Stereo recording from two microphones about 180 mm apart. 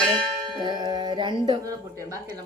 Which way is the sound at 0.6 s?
25° right (ahead or behind).